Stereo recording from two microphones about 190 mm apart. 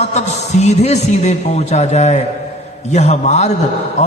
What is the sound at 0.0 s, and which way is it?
A man's voice, 35° left (ahead or behind).